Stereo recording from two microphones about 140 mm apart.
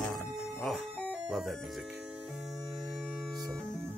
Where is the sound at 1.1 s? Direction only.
Centre (ahead or behind).